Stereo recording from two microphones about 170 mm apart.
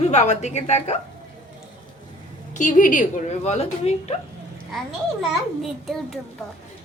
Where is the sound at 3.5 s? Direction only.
40° left (ahead or behind).